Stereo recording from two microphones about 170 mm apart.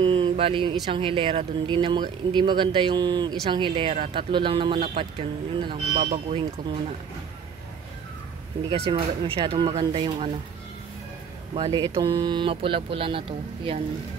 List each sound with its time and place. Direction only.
0.0 s a sound: 30° right (ahead or behind)
0.9 s speech: 30° right (ahead or behind)
8.6 s speech: 35° right (ahead or behind)
11.5 s speech: 30° right (ahead or behind)